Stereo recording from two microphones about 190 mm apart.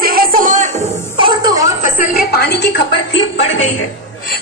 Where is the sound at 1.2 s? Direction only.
25° right (ahead or behind).